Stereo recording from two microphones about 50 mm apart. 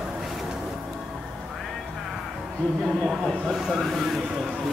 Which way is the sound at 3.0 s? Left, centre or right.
Centre.